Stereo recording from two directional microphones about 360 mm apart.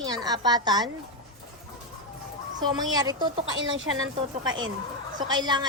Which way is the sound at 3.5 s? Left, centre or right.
Right.